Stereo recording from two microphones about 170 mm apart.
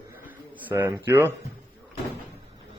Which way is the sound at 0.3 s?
10° right (ahead or behind).